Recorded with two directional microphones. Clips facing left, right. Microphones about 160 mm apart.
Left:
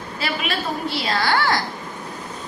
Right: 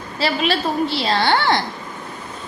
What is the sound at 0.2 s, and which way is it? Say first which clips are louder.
A woman's voice: right 6 dB; 30° right (ahead or behind).